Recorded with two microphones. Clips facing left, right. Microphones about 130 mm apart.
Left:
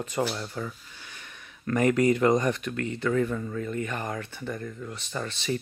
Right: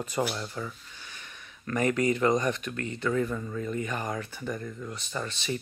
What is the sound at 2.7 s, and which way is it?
Speech, 20° right (ahead or behind).